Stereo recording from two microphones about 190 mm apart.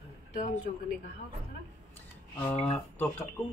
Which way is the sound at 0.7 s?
45° left (ahead or behind).